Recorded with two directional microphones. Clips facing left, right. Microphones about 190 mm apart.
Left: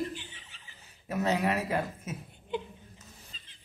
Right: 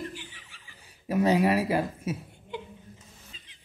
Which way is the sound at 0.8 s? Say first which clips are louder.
Right 7 dB; 10° right (ahead or behind).